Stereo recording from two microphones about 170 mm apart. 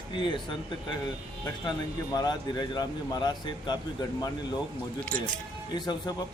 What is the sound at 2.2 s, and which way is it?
A man's voice, 25° left (ahead or behind).